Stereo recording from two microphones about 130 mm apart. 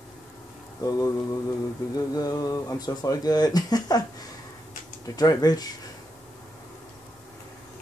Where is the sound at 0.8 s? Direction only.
25° left (ahead or behind).